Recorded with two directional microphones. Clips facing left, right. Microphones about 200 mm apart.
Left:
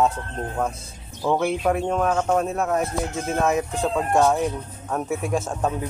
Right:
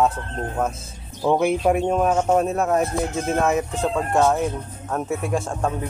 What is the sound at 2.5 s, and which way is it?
Speech, 40° right (ahead or behind).